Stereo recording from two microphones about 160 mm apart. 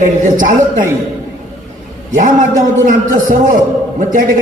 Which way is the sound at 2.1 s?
55° right (ahead or behind).